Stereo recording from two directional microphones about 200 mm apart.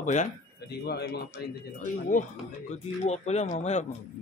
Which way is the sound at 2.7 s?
35° left (ahead or behind).